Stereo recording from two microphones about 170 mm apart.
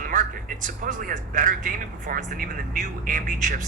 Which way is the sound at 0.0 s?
50° right (ahead or behind).